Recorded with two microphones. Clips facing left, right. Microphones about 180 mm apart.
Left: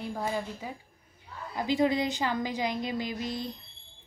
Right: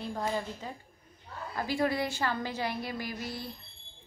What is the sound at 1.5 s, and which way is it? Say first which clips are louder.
A woman's voice: left 4 dB; 20° left (ahead or behind).